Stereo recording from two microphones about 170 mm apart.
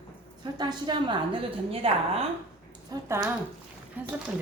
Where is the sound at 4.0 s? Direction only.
10° right (ahead or behind).